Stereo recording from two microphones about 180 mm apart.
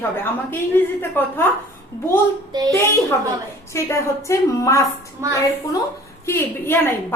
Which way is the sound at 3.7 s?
15° left (ahead or behind).